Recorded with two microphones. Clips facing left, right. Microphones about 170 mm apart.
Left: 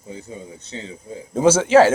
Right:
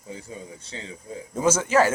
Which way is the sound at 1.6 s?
90° left.